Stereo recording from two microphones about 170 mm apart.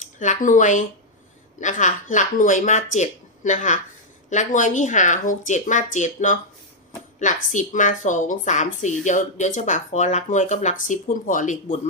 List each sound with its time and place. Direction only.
0.2 s a woman's voice: 50° left (ahead or behind)